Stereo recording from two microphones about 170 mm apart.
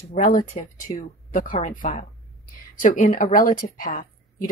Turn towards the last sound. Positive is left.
turn(degrees=55)  # may be behind; listen again after turning